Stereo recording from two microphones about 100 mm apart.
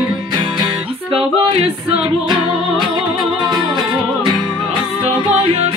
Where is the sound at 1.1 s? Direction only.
75° right (ahead or behind).